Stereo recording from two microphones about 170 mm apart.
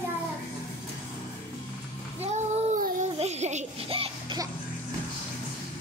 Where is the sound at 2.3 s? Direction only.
45° right (ahead or behind).